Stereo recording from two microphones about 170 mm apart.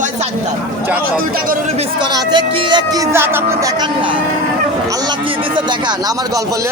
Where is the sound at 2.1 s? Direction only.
25° right (ahead or behind).